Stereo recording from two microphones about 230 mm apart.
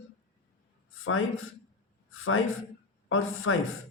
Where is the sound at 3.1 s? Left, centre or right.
Left.